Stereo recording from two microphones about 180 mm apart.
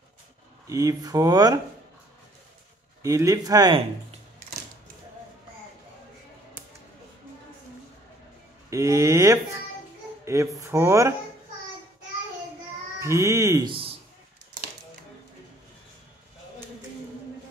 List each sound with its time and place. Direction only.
0.7 s speech: 20° right (ahead or behind)
3.0 s speech: 20° right (ahead or behind)
8.6 s speech: 15° right (ahead or behind)
13.0 s speech: 15° right (ahead or behind)
13.7 s a man's voice: 30° right (ahead or behind)